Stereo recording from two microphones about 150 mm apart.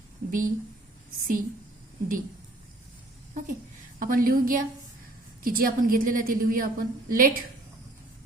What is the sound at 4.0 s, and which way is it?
A woman's voice, 70° right (ahead or behind).